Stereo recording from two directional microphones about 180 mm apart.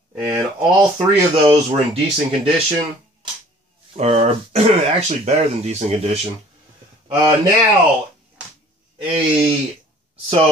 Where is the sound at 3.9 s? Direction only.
35° right (ahead or behind).